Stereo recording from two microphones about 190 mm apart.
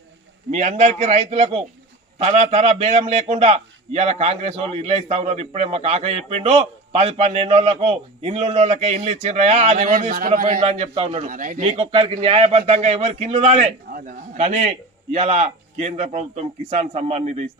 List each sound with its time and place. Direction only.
0.5 s a man's voice: 40° right (ahead or behind)
10.6 s a man's voice: 30° right (ahead or behind)
11.3 s a man's voice: 45° right (ahead or behind)
11.6 s a man's voice: 30° right (ahead or behind)